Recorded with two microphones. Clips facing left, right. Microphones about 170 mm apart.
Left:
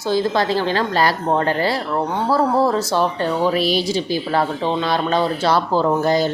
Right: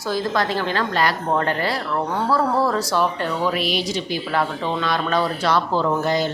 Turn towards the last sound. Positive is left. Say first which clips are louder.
# left 3 dB
turn(degrees=35)  # may be behind; listen again after turning